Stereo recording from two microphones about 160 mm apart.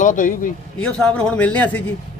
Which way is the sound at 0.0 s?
55° left (ahead or behind).